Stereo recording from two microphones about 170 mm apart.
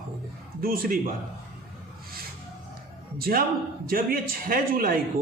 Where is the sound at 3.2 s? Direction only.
60° right (ahead or behind).